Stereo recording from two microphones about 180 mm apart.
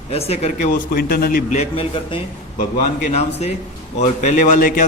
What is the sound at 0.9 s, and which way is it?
Speech, 60° left (ahead or behind).